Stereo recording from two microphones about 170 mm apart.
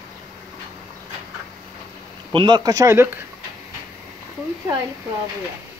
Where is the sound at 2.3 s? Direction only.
25° right (ahead or behind).